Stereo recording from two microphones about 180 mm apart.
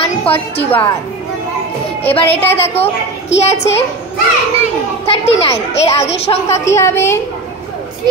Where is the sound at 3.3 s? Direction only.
90° left.